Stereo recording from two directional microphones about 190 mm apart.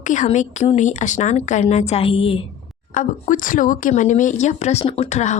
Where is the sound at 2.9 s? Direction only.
45° left (ahead or behind).